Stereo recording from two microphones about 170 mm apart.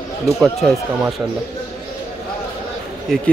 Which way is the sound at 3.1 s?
Centre (ahead or behind).